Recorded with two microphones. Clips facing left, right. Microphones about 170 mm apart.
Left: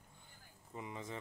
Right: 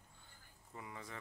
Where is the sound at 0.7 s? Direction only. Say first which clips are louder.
Left 5 dB; 20° left (ahead or behind).